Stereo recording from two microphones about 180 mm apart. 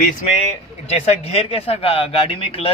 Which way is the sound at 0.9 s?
35° left (ahead or behind).